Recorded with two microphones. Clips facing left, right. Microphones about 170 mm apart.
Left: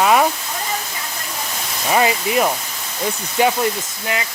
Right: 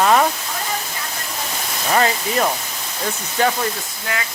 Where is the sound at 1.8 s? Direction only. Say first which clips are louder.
Left 1 dB; 10° left (ahead or behind).